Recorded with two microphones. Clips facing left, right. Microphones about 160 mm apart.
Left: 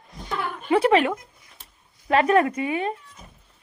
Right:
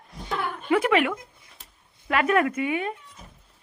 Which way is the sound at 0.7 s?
30° left (ahead or behind).